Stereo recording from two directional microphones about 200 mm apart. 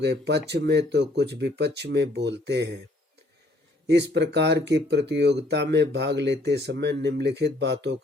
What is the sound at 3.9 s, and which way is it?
Speech, 60° right (ahead or behind).